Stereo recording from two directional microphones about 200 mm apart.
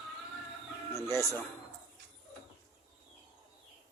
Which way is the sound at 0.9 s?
15° left (ahead or behind).